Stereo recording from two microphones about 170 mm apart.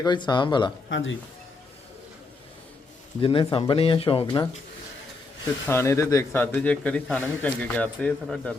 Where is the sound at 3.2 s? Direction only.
30° left (ahead or behind).